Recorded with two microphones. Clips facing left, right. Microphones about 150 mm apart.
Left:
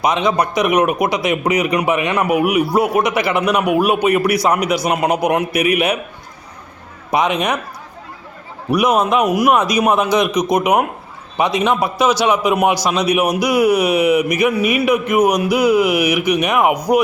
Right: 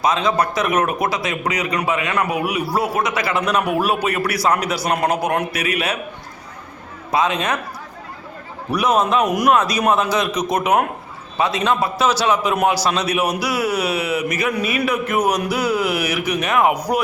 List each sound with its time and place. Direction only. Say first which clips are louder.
0.0 s speech: left 2 dB; 20° left (ahead or behind)
7.1 s speech: left 2 dB; 20° left (ahead or behind)
8.7 s speech: left 3 dB; 10° left (ahead or behind)